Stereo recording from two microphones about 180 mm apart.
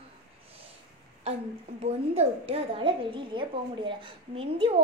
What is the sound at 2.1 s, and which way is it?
A woman's voice, 35° right (ahead or behind).